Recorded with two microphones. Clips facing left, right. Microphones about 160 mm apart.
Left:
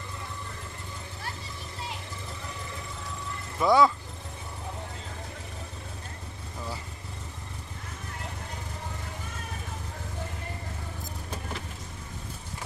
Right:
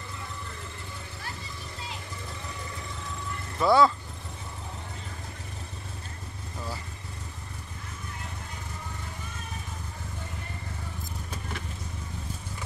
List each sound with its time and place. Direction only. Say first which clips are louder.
3.5 s speech: even; 15° left (ahead or behind)